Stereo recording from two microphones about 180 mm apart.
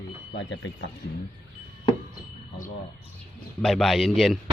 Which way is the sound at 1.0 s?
70° left (ahead or behind).